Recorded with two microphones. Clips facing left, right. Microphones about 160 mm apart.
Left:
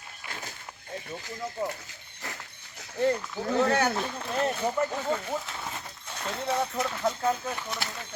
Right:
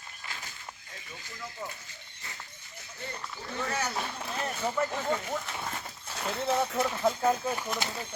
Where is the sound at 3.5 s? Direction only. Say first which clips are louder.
Left 9 dB; 70° left (ahead or behind).